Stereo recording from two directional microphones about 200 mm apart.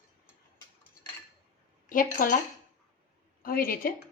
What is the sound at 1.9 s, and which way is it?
Speech, 40° left (ahead or behind).